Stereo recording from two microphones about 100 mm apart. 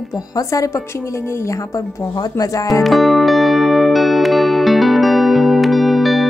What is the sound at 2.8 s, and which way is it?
Music, centre (ahead or behind).